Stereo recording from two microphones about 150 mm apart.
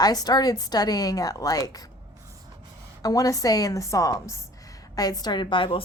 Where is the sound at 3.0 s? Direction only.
25° left (ahead or behind).